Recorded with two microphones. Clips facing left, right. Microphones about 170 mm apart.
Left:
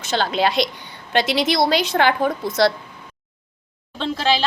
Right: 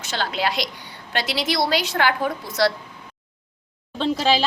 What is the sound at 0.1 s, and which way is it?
A woman's voice, 25° left (ahead or behind).